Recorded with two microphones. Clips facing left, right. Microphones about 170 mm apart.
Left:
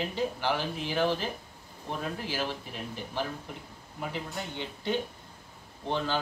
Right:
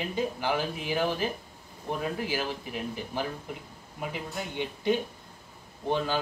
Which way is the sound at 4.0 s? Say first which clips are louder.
Right 1 dB; 15° right (ahead or behind).